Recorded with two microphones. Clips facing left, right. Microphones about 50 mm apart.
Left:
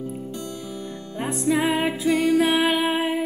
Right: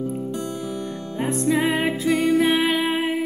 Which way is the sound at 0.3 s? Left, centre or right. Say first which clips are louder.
Right 5 dB; right.